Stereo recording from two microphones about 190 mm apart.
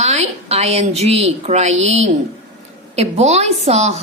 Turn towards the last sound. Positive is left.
turn(degrees=-35)  # may be behind; listen again after turning